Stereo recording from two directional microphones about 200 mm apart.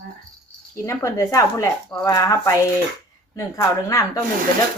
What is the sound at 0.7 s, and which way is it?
Speech, 15° left (ahead or behind).